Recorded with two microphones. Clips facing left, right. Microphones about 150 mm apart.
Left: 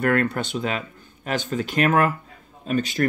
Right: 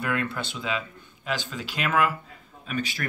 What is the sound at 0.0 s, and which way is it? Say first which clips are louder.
Speech: left 7 dB; 50° left (ahead or behind).